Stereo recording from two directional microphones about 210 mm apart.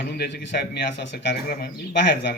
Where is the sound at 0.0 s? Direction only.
50° left (ahead or behind).